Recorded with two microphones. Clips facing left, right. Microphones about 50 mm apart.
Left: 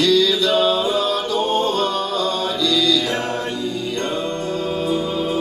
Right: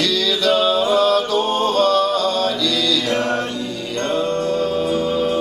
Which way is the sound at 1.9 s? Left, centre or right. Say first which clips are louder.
Right 5 dB; right.